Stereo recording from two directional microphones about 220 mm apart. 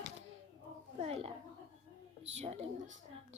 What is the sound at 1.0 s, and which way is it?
Speech, 25° right (ahead or behind).